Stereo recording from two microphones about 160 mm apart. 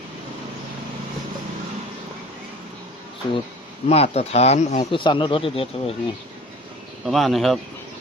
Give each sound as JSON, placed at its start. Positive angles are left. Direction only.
{"t": 3.2, "sound": "speech", "side_deg": 30}
{"t": 3.8, "sound": "speech", "side_deg": 40}
{"t": 4.8, "sound": "speech", "side_deg": 30}
{"t": 7.0, "sound": "speech", "side_deg": 0}